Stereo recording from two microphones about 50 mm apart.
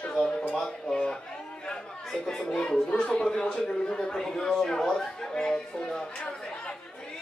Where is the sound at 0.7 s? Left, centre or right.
Centre.